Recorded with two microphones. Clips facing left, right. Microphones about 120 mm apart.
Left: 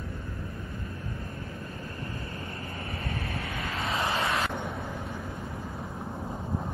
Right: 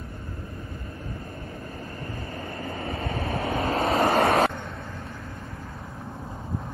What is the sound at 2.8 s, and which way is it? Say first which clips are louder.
Vehicle: right 6 dB; 25° right (ahead or behind).